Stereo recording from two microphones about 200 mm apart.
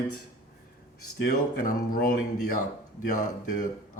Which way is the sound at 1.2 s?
45° left (ahead or behind).